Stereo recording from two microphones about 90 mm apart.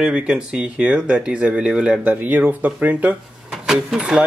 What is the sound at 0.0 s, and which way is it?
Speech, 5° right (ahead or behind).